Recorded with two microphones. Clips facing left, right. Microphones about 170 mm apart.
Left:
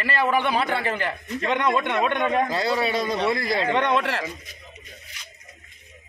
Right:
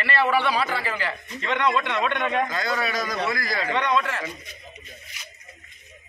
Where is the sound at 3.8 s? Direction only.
60° left (ahead or behind).